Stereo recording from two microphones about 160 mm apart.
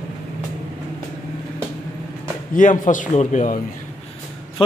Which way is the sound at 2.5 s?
55° left (ahead or behind).